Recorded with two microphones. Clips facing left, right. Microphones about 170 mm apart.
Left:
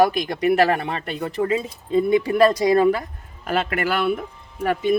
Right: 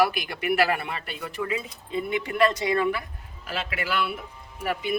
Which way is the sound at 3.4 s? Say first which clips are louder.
Left 8 dB; 55° left (ahead or behind).